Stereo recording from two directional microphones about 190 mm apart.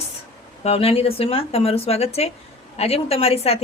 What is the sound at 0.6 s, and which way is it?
A woman's voice, 30° left (ahead or behind).